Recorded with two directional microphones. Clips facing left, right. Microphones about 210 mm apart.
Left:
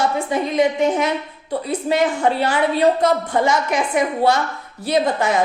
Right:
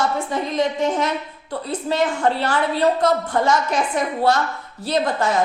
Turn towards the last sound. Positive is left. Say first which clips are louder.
# left 2 dB
turn(degrees=15)  # may be behind; listen again after turning